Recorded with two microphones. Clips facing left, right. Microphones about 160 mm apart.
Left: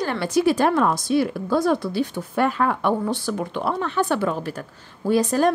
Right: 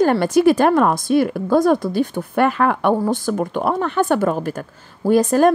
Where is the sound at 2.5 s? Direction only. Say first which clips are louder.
Right 4 dB; 65° right (ahead or behind).